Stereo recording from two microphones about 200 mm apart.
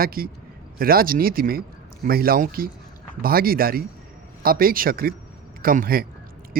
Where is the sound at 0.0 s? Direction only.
45° right (ahead or behind).